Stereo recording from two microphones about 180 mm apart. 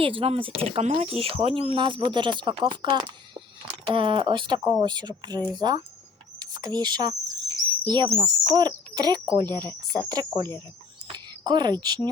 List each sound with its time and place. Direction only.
0.0 s speech: 30° right (ahead or behind)